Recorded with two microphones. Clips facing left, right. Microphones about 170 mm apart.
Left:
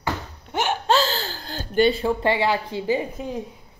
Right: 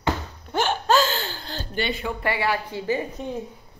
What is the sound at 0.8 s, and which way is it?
Speech, 30° left (ahead or behind).